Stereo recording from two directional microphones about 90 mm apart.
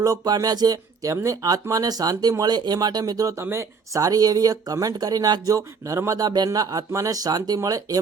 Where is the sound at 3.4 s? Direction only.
30° right (ahead or behind).